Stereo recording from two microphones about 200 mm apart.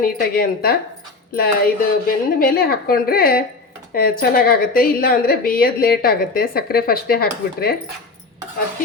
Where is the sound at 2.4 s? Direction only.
50° left (ahead or behind).